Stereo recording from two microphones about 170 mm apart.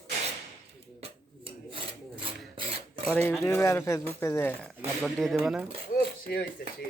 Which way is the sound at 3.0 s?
15° left (ahead or behind).